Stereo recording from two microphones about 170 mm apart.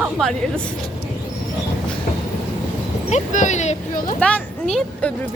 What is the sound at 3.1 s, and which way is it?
Speech, 45° left (ahead or behind).